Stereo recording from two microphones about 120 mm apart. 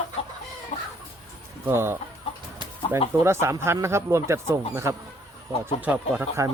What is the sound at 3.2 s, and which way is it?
Speech, 20° right (ahead or behind).